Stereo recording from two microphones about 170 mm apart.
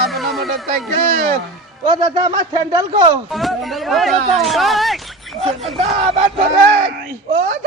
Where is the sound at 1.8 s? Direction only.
25° right (ahead or behind).